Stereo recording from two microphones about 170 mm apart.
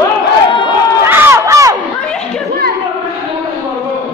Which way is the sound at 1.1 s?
15° right (ahead or behind).